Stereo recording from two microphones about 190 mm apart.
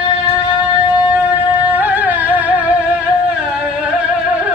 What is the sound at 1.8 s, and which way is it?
Music, 10° right (ahead or behind).